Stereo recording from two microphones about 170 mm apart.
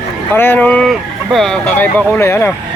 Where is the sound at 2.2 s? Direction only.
15° left (ahead or behind).